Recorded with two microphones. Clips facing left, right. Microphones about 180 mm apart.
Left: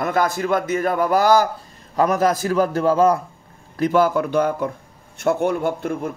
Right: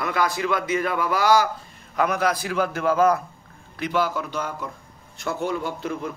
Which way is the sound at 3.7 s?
45° left (ahead or behind).